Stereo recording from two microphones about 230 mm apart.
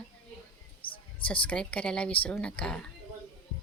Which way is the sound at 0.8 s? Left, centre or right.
Left.